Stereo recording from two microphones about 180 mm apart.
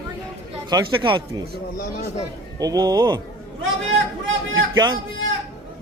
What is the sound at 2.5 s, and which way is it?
Speech, 20° right (ahead or behind).